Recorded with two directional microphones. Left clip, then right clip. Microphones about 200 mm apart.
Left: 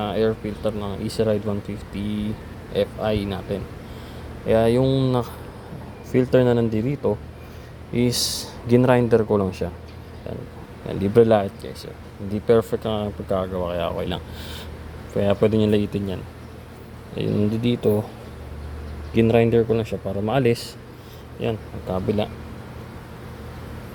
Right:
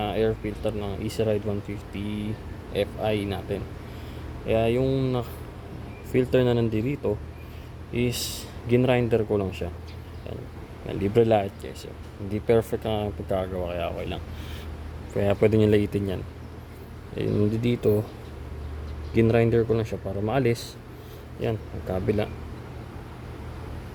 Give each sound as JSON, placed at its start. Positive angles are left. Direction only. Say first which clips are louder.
{"t": 0.0, "sound": "speech", "louder": "left 3 dB", "side_deg": 5}
{"t": 10.8, "sound": "speech", "louder": "left 5 dB", "side_deg": 15}
{"t": 15.1, "sound": "speech", "louder": "left 2 dB", "side_deg": 5}
{"t": 19.1, "sound": "speech", "louder": "left 4 dB", "side_deg": 5}